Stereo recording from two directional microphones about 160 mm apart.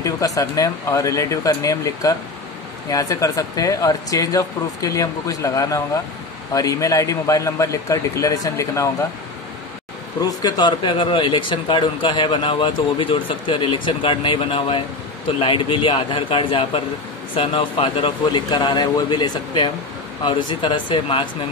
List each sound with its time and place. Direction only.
0.0 s speech: 20° left (ahead or behind)
10.2 s speech: 25° left (ahead or behind)